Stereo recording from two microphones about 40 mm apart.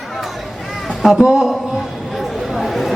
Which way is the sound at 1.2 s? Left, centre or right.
Centre.